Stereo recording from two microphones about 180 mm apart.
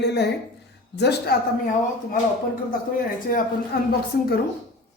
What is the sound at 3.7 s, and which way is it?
Speech, 60° left (ahead or behind).